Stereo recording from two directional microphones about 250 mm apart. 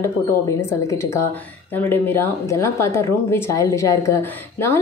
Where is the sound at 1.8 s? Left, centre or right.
Centre.